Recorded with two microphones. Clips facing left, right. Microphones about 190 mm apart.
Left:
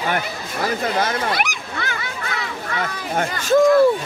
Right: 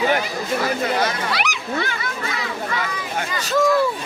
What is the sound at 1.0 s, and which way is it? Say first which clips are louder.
Speech: left 1 dB; 50° left (ahead or behind).